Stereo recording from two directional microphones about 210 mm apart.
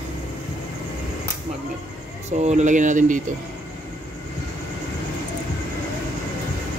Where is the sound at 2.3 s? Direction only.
35° right (ahead or behind).